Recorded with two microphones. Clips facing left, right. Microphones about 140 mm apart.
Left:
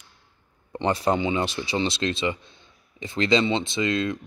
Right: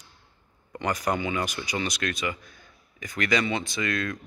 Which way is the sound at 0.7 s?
25° left (ahead or behind).